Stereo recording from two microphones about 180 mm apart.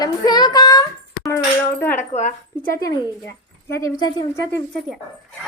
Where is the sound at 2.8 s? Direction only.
20° left (ahead or behind).